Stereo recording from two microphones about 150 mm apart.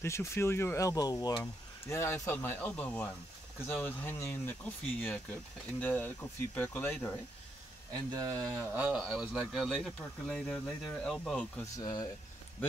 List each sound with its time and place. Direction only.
0.0 s speech: 20° left (ahead or behind)
8.1 s speech: 25° right (ahead or behind)
8.9 s speech: centre (ahead or behind)
11.8 s speech: 30° left (ahead or behind)